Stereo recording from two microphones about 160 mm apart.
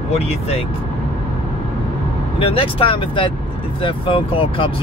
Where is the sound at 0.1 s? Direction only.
40° left (ahead or behind).